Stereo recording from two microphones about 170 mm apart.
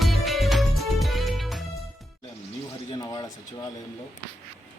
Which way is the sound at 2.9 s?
25° left (ahead or behind).